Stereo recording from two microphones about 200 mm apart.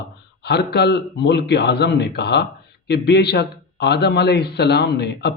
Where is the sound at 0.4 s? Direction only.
55° left (ahead or behind).